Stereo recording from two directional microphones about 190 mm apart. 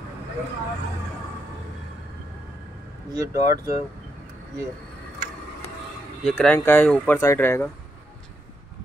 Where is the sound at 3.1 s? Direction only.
15° right (ahead or behind).